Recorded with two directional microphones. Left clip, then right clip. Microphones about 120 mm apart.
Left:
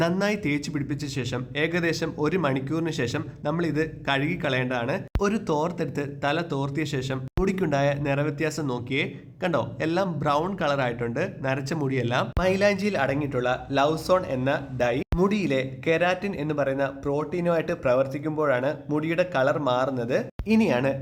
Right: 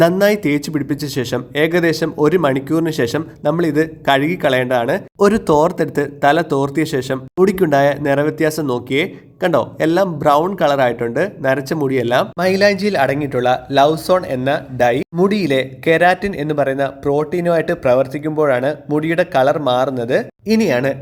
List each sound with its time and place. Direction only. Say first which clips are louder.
0.0 s a man's voice: right 12 dB; 35° right (ahead or behind)